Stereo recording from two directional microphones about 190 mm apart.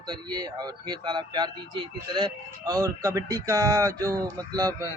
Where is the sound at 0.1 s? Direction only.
20° right (ahead or behind).